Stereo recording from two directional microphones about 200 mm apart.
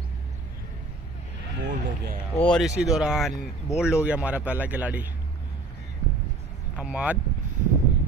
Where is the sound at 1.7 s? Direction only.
40° right (ahead or behind).